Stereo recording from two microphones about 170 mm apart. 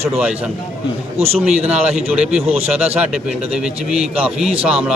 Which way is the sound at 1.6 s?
5° right (ahead or behind).